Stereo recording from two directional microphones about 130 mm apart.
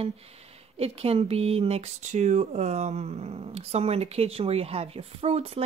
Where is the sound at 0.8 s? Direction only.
50° right (ahead or behind).